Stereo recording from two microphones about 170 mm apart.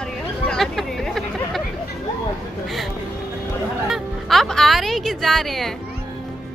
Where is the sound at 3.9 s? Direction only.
Centre (ahead or behind).